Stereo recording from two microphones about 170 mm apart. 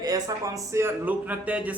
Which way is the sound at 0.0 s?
20° right (ahead or behind).